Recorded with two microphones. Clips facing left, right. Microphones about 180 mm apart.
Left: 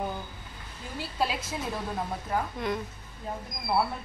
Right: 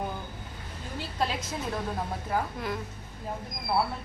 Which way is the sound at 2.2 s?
Centre (ahead or behind).